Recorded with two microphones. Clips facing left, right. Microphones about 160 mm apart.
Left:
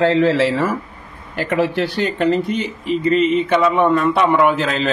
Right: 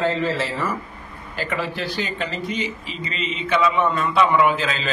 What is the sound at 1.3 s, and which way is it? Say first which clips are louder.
Speech: left 8 dB; 65° left (ahead or behind).